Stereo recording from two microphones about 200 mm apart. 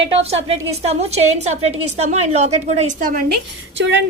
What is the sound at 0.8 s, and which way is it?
A woman's voice, 30° right (ahead or behind).